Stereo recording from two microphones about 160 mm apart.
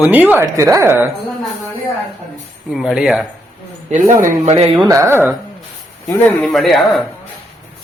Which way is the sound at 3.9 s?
50° right (ahead or behind).